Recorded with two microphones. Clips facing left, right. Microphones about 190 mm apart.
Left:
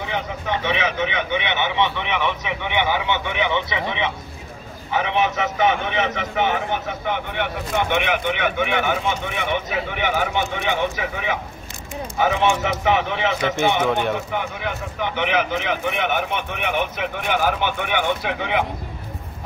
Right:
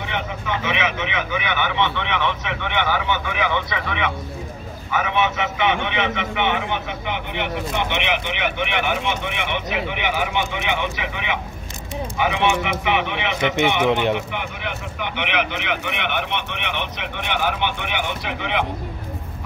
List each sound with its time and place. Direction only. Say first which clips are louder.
0.0 s a man's voice: left 1 dB; 35° left (ahead or behind)
13.4 s speech: right 1 dB; 20° right (ahead or behind)
14.3 s a man's voice: left 3 dB; 40° left (ahead or behind)